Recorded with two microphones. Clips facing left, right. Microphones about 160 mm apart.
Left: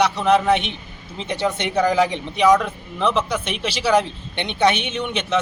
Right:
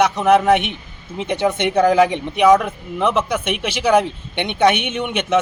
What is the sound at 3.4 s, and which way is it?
Speech, 50° right (ahead or behind).